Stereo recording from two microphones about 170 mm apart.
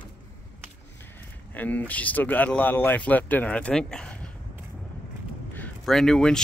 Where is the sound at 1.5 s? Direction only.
10° left (ahead or behind).